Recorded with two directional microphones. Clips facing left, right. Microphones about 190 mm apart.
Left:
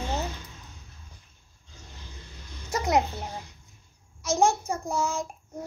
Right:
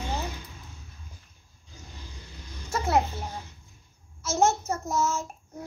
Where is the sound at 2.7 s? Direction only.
15° left (ahead or behind).